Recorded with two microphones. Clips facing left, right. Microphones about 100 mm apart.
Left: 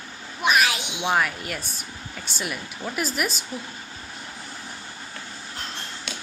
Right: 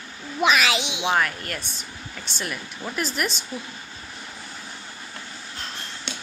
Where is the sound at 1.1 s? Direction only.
5° left (ahead or behind).